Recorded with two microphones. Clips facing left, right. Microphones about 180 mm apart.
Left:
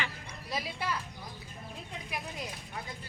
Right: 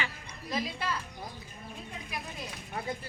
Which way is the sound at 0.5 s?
15° left (ahead or behind).